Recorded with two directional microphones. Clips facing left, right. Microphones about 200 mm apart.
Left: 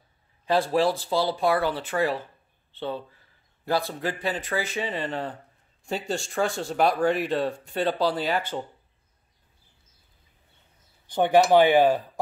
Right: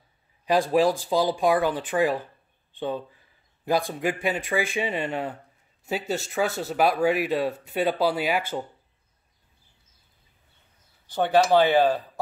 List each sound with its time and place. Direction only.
0.5 s speech: 15° right (ahead or behind)
11.1 s speech: 15° left (ahead or behind)